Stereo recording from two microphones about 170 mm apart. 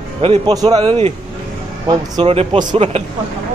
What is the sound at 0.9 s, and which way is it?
Speech, 40° right (ahead or behind).